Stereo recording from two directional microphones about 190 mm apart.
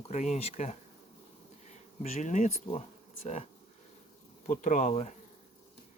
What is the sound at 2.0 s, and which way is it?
Speech, 35° left (ahead or behind).